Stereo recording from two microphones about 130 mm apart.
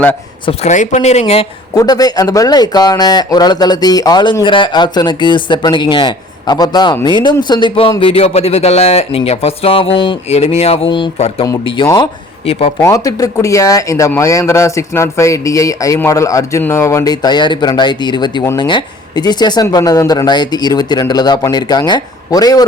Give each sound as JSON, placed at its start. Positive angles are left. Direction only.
{"t": 0.6, "sound": "speech", "side_deg": 65}
{"t": 1.2, "sound": "speech", "side_deg": 50}
{"t": 1.7, "sound": "speech", "side_deg": 30}
{"t": 10.8, "sound": "speech", "side_deg": 40}
{"t": 12.8, "sound": "a man's voice", "side_deg": 25}